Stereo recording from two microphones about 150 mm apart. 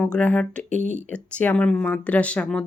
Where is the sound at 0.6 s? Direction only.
55° right (ahead or behind).